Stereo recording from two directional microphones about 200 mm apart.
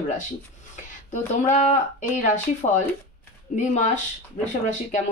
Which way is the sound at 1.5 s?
40° left (ahead or behind).